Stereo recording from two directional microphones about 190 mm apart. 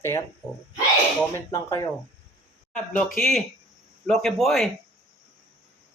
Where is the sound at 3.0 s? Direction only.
Centre (ahead or behind).